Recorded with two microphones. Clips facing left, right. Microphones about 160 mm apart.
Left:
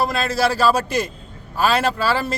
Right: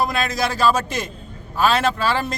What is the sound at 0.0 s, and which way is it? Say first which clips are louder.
Speech: left 2 dB; 5° left (ahead or behind).